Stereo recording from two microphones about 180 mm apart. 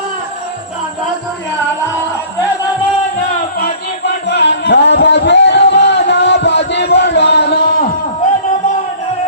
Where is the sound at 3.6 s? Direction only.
75° left (ahead or behind).